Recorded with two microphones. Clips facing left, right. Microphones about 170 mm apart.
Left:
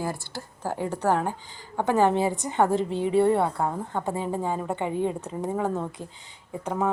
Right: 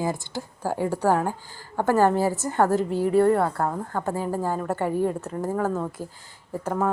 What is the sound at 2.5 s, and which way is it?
Speech, 5° right (ahead or behind).